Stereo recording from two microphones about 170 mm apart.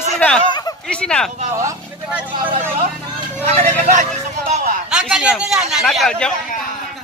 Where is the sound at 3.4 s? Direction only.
40° right (ahead or behind).